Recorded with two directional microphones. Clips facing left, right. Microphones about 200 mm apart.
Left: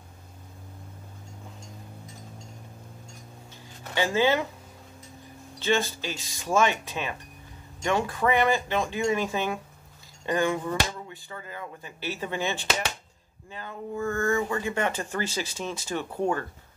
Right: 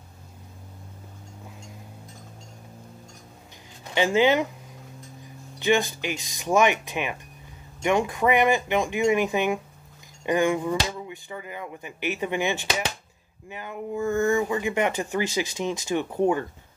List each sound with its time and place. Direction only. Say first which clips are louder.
3.8 s speech: right 3 dB; 15° right (ahead or behind)
5.6 s speech: right 3 dB; 15° right (ahead or behind)